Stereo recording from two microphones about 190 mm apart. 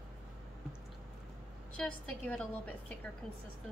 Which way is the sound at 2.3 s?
5° left (ahead or behind).